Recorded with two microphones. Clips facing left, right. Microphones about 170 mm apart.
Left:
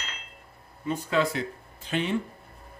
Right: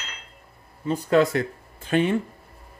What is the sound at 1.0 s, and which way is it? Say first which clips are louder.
Speech: right 7 dB; 50° right (ahead or behind).